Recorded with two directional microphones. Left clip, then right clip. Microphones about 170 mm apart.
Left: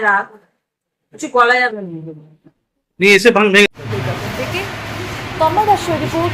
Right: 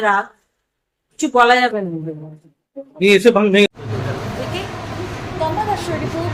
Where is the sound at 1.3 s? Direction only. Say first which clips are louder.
Even; 35° right (ahead or behind).